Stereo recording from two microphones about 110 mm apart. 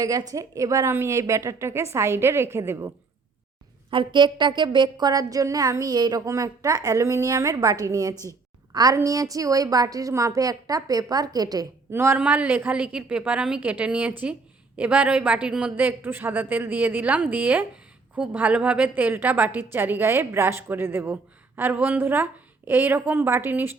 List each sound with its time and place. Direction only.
0.0 s a woman's voice: 30° right (ahead or behind)
3.9 s a woman's voice: 45° right (ahead or behind)
8.1 s a woman's voice: 25° left (ahead or behind)
8.7 s a woman's voice: 35° right (ahead or behind)
11.9 s a woman's voice: 20° right (ahead or behind)